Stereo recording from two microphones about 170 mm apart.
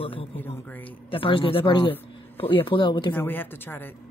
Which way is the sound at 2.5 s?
30° left (ahead or behind).